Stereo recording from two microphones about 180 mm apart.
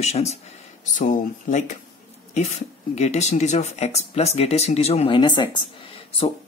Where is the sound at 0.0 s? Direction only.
35° left (ahead or behind).